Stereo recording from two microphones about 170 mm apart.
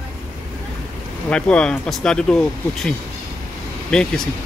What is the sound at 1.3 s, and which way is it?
Speech, 5° left (ahead or behind).